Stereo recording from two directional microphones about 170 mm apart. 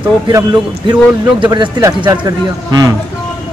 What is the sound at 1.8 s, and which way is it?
Speech, 15° right (ahead or behind).